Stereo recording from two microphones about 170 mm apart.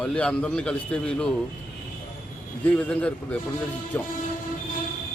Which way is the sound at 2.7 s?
10° left (ahead or behind).